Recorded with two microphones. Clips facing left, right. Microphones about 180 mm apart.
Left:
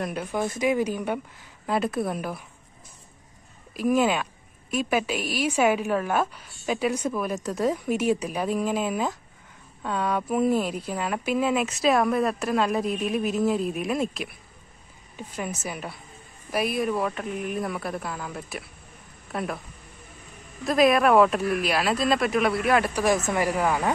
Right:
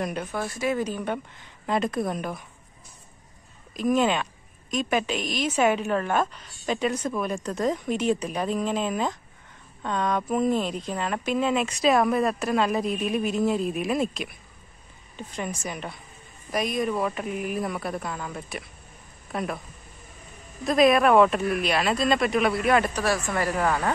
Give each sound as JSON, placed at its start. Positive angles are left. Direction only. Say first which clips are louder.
{"t": 0.0, "sound": "speech", "louder": "right 1 dB", "side_deg": 5}
{"t": 0.3, "sound": "a woman's voice", "louder": "left 6 dB", "side_deg": 15}
{"t": 3.7, "sound": "a woman's voice", "louder": "even", "side_deg": 10}
{"t": 20.6, "sound": "speech", "louder": "right 1 dB", "side_deg": 0}
{"t": 23.0, "sound": "a woman's voice", "louder": "left 2 dB", "side_deg": 20}